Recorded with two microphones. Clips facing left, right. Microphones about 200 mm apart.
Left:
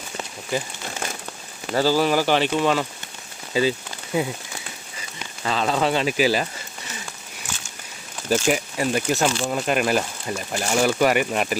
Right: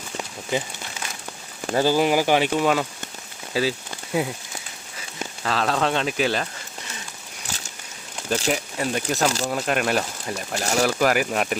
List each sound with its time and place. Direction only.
1.7 s speech: 15° right (ahead or behind)
3.5 s rain on surface: 5° right (ahead or behind)
5.4 s speech: centre (ahead or behind)
8.4 s speech: 5° left (ahead or behind)
9.2 s speech: 40° right (ahead or behind)
9.5 s speech: centre (ahead or behind)